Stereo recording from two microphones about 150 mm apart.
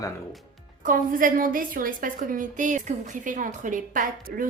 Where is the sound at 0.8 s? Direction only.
65° right (ahead or behind).